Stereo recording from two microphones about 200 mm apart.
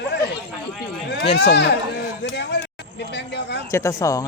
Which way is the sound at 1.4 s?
60° left (ahead or behind).